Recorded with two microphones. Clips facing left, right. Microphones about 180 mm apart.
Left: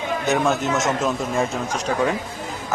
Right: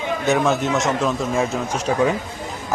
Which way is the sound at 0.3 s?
Centre (ahead or behind).